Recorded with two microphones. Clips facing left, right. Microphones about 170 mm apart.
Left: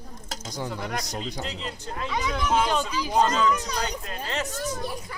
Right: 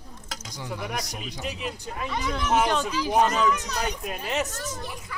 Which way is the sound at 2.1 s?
Centre (ahead or behind).